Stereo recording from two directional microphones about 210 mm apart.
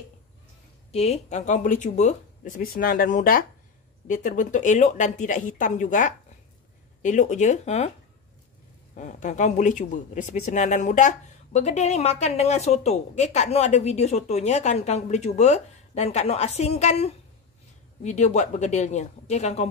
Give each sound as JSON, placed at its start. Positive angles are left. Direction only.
{"t": 0.9, "sound": "speech", "side_deg": 30}
{"t": 8.9, "sound": "speech", "side_deg": 35}